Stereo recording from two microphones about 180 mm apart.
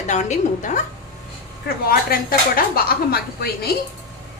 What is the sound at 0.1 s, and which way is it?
Speech, 40° left (ahead or behind).